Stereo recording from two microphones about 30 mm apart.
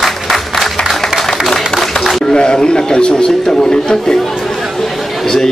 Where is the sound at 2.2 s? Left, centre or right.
Left.